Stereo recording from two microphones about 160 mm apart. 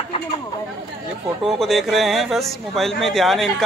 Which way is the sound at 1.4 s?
Centre (ahead or behind).